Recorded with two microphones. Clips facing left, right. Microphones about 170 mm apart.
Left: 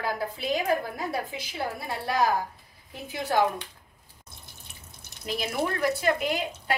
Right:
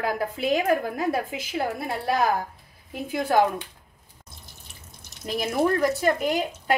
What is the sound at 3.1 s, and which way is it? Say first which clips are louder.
Speech: right 5 dB; 55° right (ahead or behind).